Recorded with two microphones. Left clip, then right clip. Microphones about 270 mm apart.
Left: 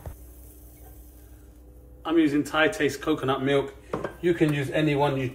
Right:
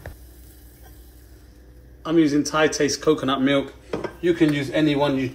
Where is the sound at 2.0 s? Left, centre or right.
Centre.